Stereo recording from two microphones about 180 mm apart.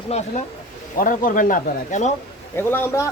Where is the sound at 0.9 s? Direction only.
50° left (ahead or behind).